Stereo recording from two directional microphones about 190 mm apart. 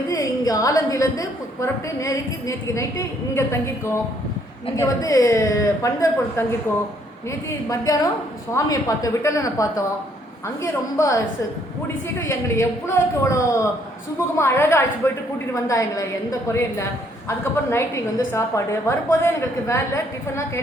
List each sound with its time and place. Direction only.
0.1 s a woman's voice: 20° left (ahead or behind)
7.9 s a woman's voice: 20° left (ahead or behind)
12.3 s a woman's voice: 15° left (ahead or behind)
17.2 s a woman's voice: 15° left (ahead or behind)